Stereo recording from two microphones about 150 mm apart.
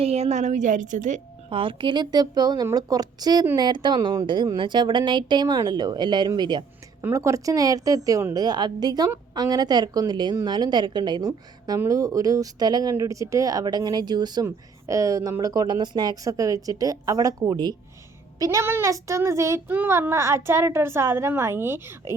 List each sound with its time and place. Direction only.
0.0 s a woman's voice: 45° right (ahead or behind)
1.5 s a woman's voice: 35° right (ahead or behind)
7.0 s a woman's voice: 20° right (ahead or behind)
18.3 s child singing: 20° right (ahead or behind)